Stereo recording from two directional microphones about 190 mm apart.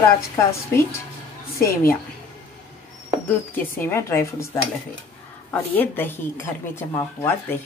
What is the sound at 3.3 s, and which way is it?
Speech, 10° left (ahead or behind).